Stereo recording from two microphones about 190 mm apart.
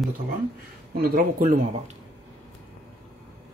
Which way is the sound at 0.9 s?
50° right (ahead or behind).